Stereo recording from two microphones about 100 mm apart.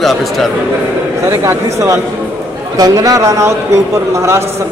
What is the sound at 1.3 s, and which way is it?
A man's voice, 30° right (ahead or behind).